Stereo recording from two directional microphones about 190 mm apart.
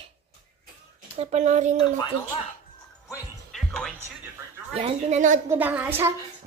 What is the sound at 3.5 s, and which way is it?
Music, 5° left (ahead or behind).